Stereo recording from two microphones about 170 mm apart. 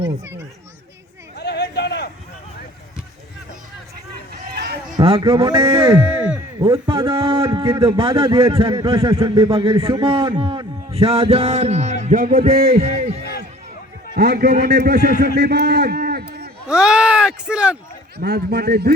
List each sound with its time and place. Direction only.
1.4 s a sound: 85° left
4.5 s a sound: 70° right (ahead or behind)
4.9 s a man's voice: 35° right (ahead or behind)
6.0 s speech: 5° right (ahead or behind)
6.6 s a man's voice: 25° right (ahead or behind); by 12.7 s 60° right (ahead or behind)
12.7 s a man's voice: 40° right (ahead or behind)
14.2 s a man's voice: 70° right (ahead or behind)
16.6 s speech: 5° right (ahead or behind)
18.2 s a man's voice: 70° right (ahead or behind)